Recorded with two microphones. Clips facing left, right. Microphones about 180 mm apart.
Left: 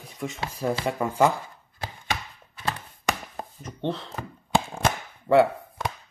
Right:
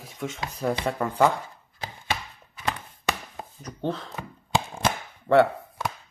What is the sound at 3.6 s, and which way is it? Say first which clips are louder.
Speech: even; centre (ahead or behind).